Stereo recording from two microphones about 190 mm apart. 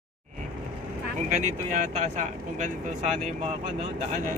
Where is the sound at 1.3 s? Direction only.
40° right (ahead or behind).